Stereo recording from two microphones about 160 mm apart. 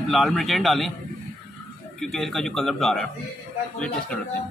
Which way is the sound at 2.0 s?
Centre (ahead or behind).